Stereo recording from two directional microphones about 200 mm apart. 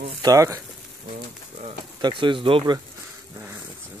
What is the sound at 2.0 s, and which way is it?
Speech, 25° right (ahead or behind).